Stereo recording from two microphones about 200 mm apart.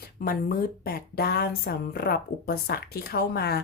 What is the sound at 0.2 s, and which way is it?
A woman's voice, 45° left (ahead or behind).